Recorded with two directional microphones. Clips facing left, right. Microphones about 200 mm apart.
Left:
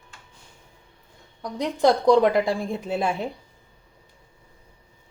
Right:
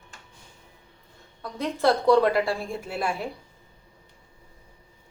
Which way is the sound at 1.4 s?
15° left (ahead or behind).